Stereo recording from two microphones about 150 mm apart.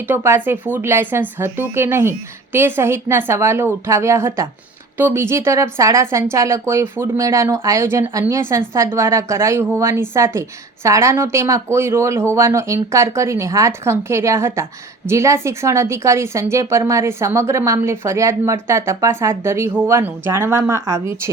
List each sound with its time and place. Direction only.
0.1 s a woman's voice: 15° right (ahead or behind)